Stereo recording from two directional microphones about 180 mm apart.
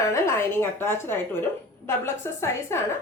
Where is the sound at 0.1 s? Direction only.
15° left (ahead or behind).